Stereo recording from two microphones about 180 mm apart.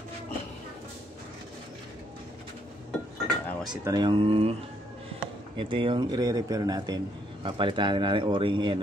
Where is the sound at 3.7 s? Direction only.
25° right (ahead or behind).